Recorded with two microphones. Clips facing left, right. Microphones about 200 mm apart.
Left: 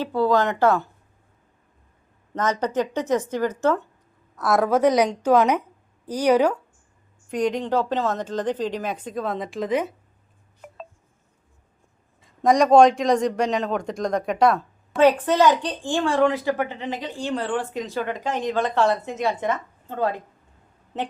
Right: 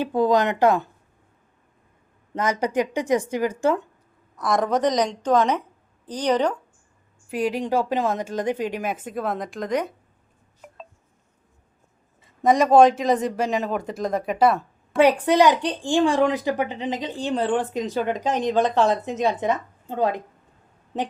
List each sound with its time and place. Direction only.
0.0 s a man's voice: 15° right (ahead or behind)
2.3 s a man's voice: 10° right (ahead or behind)
4.4 s a woman's voice: 5° left (ahead or behind)
7.3 s a man's voice: 5° right (ahead or behind)
12.2 s a man's voice: centre (ahead or behind)